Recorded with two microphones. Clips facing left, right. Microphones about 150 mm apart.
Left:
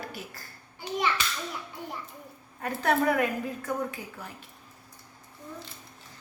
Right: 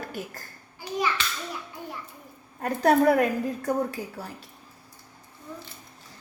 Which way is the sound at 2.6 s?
40° right (ahead or behind).